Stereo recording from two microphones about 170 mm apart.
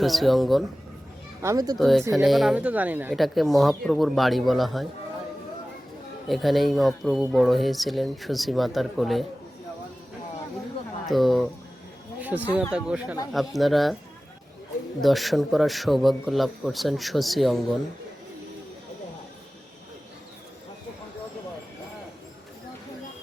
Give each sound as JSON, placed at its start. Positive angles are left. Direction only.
{"t": 0.0, "sound": "speech", "side_deg": 0}
{"t": 1.4, "sound": "a child's voice", "side_deg": -20}
{"t": 1.8, "sound": "speech", "side_deg": 0}
{"t": 6.2, "sound": "speech", "side_deg": 0}
{"t": 11.0, "sound": "speech", "side_deg": 0}
{"t": 15.0, "sound": "speech", "side_deg": 0}